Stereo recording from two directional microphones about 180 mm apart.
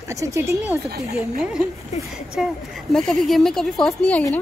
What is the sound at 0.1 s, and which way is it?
Speech, 15° right (ahead or behind).